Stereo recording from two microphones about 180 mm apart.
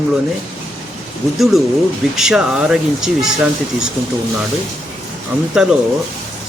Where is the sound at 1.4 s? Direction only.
Centre (ahead or behind).